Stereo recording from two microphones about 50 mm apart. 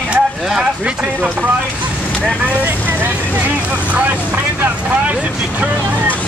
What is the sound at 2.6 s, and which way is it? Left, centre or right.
Speech, right.